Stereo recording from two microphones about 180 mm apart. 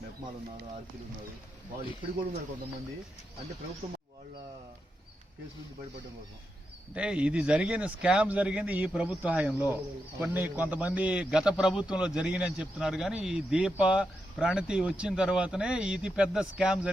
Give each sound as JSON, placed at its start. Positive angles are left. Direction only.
{"t": 3.8, "sound": "speech", "side_deg": -35}
{"t": 6.9, "sound": "a man's voice", "side_deg": -5}